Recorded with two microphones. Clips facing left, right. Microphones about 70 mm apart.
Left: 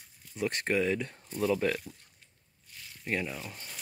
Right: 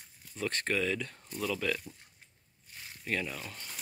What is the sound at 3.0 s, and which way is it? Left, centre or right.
Speech, centre.